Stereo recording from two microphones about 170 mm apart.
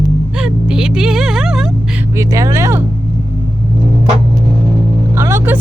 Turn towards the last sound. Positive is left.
turn(degrees=-15)  # may be behind; listen again after turning